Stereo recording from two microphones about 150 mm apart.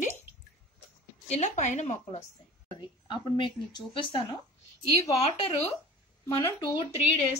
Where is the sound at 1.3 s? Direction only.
50° left (ahead or behind).